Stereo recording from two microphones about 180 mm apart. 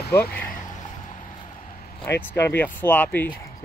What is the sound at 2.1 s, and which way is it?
Speech, 15° left (ahead or behind).